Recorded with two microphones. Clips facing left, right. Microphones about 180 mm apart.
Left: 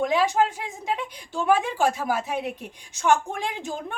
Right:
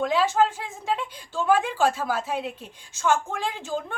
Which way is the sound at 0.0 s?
15° left (ahead or behind).